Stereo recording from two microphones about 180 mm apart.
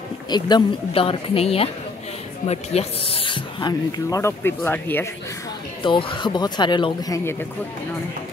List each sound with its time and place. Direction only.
0.3 s speech: 25° left (ahead or behind)
5.8 s speech: 30° left (ahead or behind)